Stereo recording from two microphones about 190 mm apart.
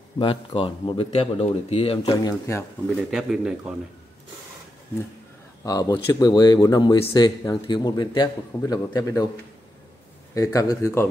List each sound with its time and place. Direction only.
0.2 s speech: 25° left (ahead or behind)
3.0 s speech: centre (ahead or behind)
5.6 s speech: 20° left (ahead or behind)
10.3 s speech: 15° left (ahead or behind)